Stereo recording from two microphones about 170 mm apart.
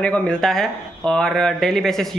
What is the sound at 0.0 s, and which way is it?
Speech, 5° left (ahead or behind).